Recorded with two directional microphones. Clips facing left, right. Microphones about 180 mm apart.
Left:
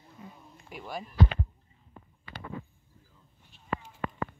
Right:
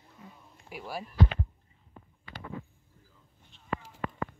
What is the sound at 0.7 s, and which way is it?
Speech, 5° right (ahead or behind).